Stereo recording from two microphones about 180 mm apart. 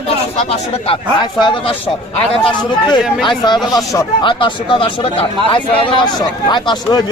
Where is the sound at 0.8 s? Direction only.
25° left (ahead or behind).